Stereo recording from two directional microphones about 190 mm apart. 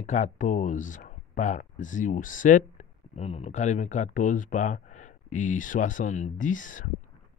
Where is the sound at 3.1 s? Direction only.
30° left (ahead or behind).